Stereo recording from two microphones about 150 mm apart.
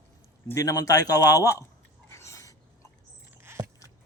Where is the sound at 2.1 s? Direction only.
20° left (ahead or behind).